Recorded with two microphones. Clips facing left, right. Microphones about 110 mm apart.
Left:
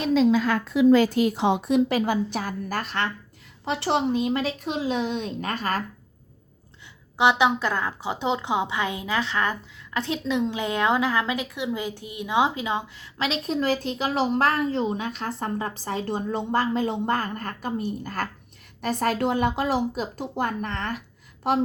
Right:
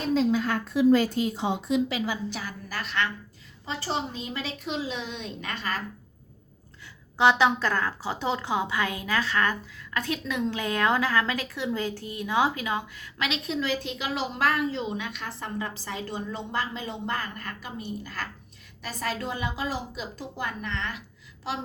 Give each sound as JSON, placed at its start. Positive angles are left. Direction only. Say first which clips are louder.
{"t": 0.1, "sound": "speech", "louder": "left 4 dB", "side_deg": 90}
{"t": 3.7, "sound": "speech", "louder": "left 8 dB", "side_deg": 70}
{"t": 7.2, "sound": "a woman's voice", "louder": "left 1 dB", "side_deg": 15}